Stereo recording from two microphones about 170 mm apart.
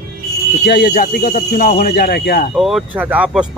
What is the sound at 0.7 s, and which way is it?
Speech, 70° left (ahead or behind).